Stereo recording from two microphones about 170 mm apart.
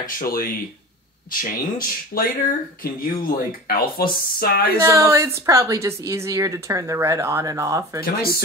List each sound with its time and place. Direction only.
0.0 s speech: 55° left (ahead or behind)
4.7 s speech: 15° right (ahead or behind)
8.0 s speech: 60° left (ahead or behind)